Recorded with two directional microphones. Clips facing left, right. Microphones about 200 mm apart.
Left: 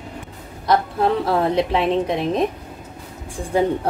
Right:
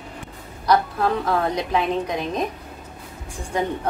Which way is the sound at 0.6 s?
25° left (ahead or behind).